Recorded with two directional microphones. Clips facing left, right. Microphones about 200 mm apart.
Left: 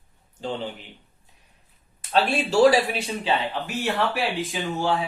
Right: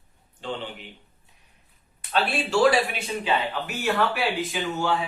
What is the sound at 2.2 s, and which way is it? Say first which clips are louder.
Speech: left 3 dB; 40° left (ahead or behind).